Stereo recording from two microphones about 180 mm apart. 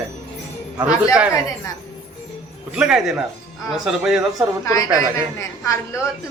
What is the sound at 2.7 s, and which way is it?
Speech, 5° right (ahead or behind).